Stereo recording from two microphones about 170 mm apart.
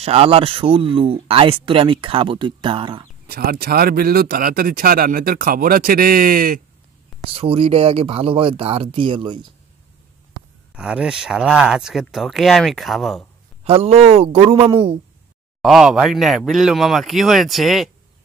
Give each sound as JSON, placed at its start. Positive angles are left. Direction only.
{"t": 0.0, "sound": "speech", "side_deg": -35}
{"t": 3.3, "sound": "speech", "side_deg": -60}
{"t": 7.2, "sound": "speech", "side_deg": -35}
{"t": 10.8, "sound": "speech", "side_deg": -5}
{"t": 13.7, "sound": "speech", "side_deg": -35}
{"t": 15.6, "sound": "speech", "side_deg": -5}